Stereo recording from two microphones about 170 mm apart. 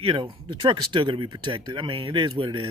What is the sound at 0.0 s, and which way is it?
A man's voice, 30° right (ahead or behind).